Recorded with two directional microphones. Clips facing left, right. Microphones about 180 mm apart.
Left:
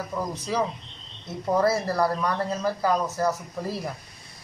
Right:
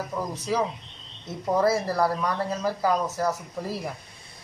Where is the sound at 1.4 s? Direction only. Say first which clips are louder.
Even; 5° right (ahead or behind).